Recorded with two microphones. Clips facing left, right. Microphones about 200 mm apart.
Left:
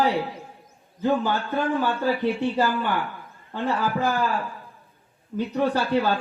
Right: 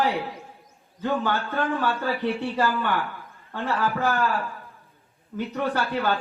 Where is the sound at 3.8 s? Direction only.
15° left (ahead or behind).